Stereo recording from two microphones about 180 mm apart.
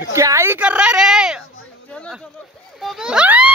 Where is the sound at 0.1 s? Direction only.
15° right (ahead or behind).